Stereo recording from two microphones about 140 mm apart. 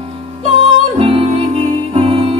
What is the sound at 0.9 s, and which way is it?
Music, 40° right (ahead or behind).